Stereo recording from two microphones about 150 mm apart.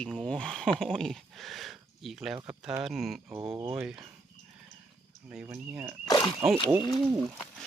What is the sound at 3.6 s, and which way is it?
Speech, 15° right (ahead or behind).